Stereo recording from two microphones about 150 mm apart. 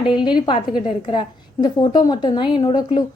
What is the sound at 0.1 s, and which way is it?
A woman's voice, 30° left (ahead or behind).